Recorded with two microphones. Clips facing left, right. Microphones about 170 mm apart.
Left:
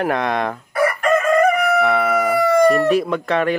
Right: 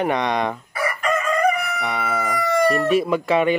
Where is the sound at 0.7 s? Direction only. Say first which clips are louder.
Left 8 dB; 55° left (ahead or behind).